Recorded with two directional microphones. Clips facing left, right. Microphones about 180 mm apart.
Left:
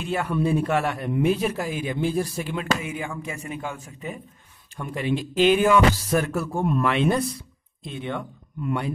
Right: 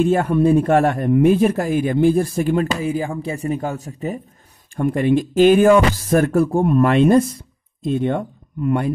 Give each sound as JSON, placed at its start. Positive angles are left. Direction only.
{"t": 0.0, "sound": "a man's voice", "side_deg": -45}
{"t": 4.7, "sound": "a man's voice", "side_deg": -50}